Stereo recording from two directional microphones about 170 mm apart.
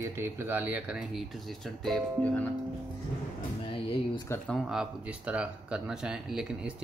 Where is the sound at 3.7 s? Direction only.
30° left (ahead or behind).